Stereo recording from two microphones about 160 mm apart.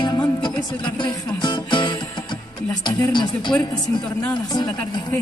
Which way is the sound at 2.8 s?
30° left (ahead or behind).